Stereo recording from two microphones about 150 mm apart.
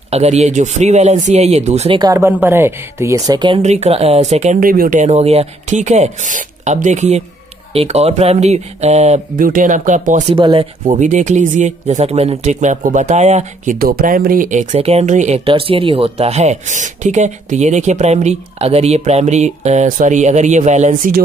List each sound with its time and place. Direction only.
0.1 s speech: 45° right (ahead or behind)
2.0 s speech: 25° right (ahead or behind)
3.3 s speech: 30° right (ahead or behind)
3.6 s speech: 45° right (ahead or behind)
4.6 s speech: 70° right (ahead or behind); by 9.5 s 45° right (ahead or behind)
9.5 s speech: 60° right (ahead or behind)
10.3 s speech: 35° right (ahead or behind)
10.9 s speech: 55° right (ahead or behind)
13.7 s speech: 80° right; by 21.1 s 50° right (ahead or behind)